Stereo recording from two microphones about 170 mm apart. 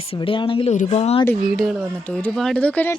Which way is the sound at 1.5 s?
Centre (ahead or behind).